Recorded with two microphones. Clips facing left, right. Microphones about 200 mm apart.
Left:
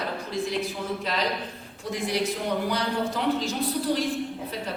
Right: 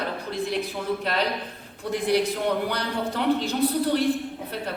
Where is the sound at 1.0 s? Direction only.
60° right (ahead or behind).